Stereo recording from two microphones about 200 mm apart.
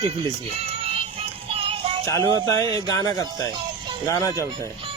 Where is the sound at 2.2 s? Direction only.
20° right (ahead or behind).